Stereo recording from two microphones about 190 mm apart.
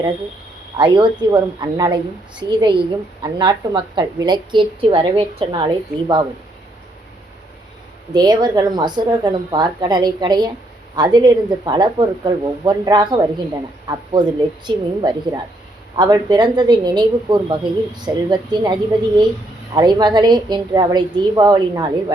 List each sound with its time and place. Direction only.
0.8 s a woman's voice: 25° right (ahead or behind)
8.1 s a woman's voice: 20° right (ahead or behind)